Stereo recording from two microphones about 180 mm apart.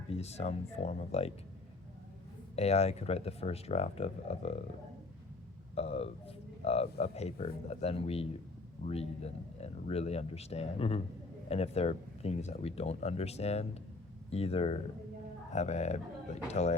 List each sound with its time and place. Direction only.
0.1 s speech: 35° left (ahead or behind)
2.6 s speech: 35° left (ahead or behind)
5.7 s a man's voice: 35° left (ahead or behind)